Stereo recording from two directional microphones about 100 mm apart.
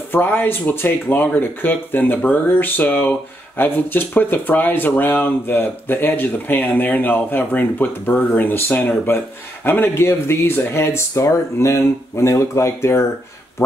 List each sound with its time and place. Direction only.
0.1 s speech: 20° left (ahead or behind)